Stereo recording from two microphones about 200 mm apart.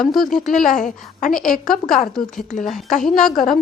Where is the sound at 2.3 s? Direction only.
40° left (ahead or behind).